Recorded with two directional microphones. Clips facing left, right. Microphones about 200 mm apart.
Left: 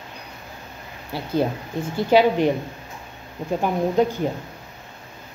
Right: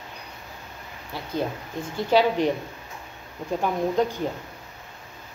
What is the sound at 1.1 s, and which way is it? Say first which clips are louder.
Speech: left 6 dB; 30° left (ahead or behind).